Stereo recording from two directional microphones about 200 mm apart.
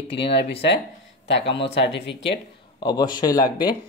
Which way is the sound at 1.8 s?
60° left (ahead or behind).